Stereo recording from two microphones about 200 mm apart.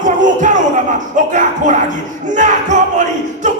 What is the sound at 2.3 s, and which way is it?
Speech, 40° right (ahead or behind).